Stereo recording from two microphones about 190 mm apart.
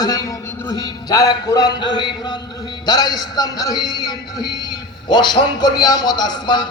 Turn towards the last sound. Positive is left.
turn(degrees=20)  # may be behind; listen again after turning